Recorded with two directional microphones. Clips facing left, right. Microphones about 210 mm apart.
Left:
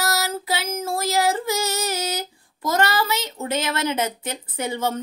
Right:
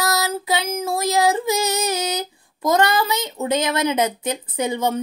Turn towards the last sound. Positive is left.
turn(degrees=-15)  # may be behind; listen again after turning